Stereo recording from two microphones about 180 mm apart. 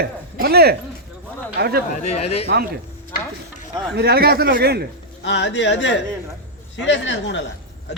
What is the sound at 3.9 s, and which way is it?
Speech, 60° right (ahead or behind).